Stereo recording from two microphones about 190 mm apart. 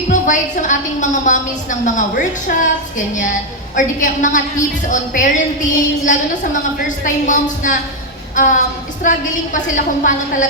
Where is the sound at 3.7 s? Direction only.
40° left (ahead or behind).